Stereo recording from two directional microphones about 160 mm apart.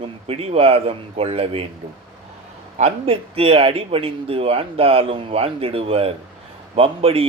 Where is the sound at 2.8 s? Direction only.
40° right (ahead or behind).